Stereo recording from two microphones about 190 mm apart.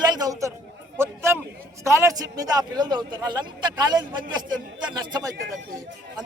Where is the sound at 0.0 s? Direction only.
20° right (ahead or behind).